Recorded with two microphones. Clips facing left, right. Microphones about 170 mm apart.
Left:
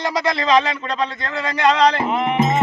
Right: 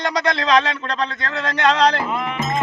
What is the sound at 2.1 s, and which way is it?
Music, 20° left (ahead or behind).